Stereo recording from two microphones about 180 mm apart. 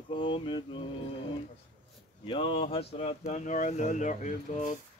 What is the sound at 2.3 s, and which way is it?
Speech, 25° left (ahead or behind).